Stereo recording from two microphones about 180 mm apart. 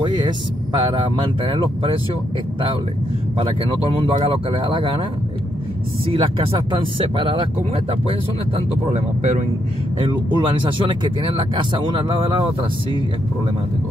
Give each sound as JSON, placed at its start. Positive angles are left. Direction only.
{"t": 0.0, "sound": "vehicle", "side_deg": -25}
{"t": 0.7, "sound": "speech", "side_deg": -25}
{"t": 3.3, "sound": "speech", "side_deg": -30}
{"t": 6.0, "sound": "speech", "side_deg": -30}
{"t": 9.9, "sound": "speech", "side_deg": -25}